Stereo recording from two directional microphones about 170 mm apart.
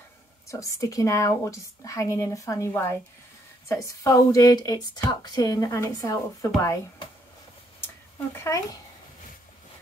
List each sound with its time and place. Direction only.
0.5 s speech: 20° left (ahead or behind)
8.5 s speech: 15° left (ahead or behind)